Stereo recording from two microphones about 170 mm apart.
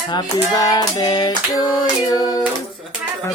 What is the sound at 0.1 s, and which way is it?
Child singing, 25° left (ahead or behind).